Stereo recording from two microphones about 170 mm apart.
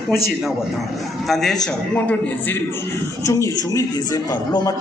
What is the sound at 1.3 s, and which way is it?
A man's voice, centre (ahead or behind).